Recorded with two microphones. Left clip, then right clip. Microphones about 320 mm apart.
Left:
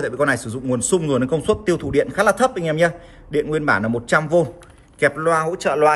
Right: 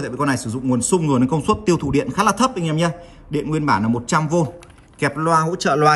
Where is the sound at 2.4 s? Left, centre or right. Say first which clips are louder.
Left 3 dB; centre.